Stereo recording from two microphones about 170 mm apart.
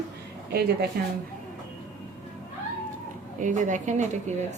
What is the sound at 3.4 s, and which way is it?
Speech, 50° right (ahead or behind).